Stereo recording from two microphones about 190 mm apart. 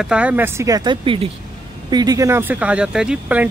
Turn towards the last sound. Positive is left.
turn(degrees=-5)  # may be behind; listen again after turning